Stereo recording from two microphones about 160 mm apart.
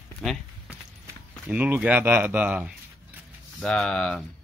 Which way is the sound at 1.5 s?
10° right (ahead or behind).